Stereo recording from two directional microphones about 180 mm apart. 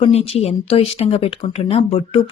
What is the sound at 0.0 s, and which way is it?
Speech, 35° left (ahead or behind).